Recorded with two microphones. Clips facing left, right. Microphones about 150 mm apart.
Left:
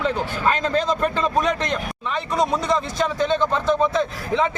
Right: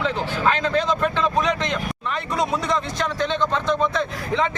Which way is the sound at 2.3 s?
Centre (ahead or behind).